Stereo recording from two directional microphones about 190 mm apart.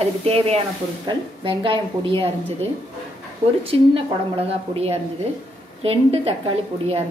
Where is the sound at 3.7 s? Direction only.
30° right (ahead or behind).